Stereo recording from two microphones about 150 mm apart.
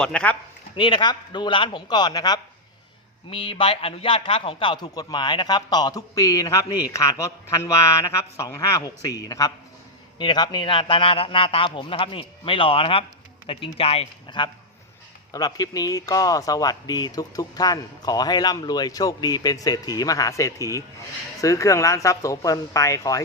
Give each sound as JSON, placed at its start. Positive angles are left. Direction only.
{"t": 0.0, "sound": "speech", "side_deg": 5}
{"t": 0.8, "sound": "a man's voice", "side_deg": 30}